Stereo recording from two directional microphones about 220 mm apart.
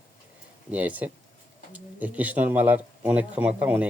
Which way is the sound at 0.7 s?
5° right (ahead or behind).